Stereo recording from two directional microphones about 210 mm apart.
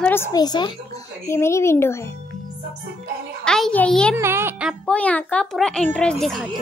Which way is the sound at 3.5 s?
5° left (ahead or behind).